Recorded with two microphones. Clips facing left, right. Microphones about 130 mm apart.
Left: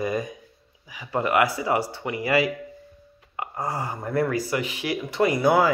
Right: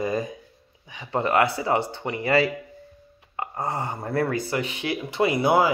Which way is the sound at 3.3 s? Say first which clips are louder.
Right 1 dB; 30° right (ahead or behind).